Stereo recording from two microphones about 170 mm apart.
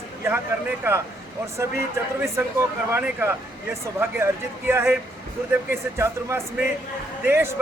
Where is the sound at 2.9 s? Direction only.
15° right (ahead or behind).